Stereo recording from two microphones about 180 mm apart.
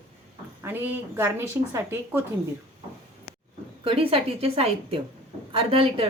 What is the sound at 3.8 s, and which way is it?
A woman's voice, 30° right (ahead or behind).